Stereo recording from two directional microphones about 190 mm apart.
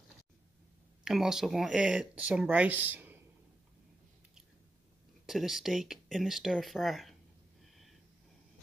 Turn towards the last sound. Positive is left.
turn(degrees=0)  # may be behind; listen again after turning